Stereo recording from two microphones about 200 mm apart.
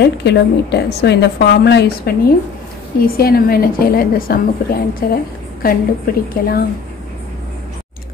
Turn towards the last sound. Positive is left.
turn(degrees=45)  # may be behind; listen again after turning